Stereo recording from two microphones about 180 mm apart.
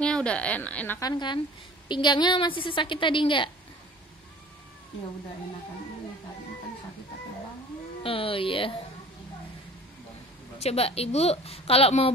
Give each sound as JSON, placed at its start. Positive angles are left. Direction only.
{"t": 0.0, "sound": "a woman's voice", "side_deg": 5}
{"t": 8.0, "sound": "speech", "side_deg": 30}
{"t": 10.6, "sound": "speech", "side_deg": 35}